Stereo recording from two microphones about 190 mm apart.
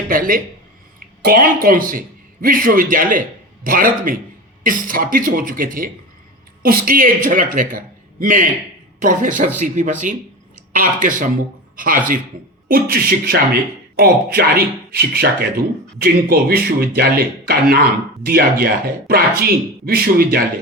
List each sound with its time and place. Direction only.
0.1 s a man's voice: 45° right (ahead or behind)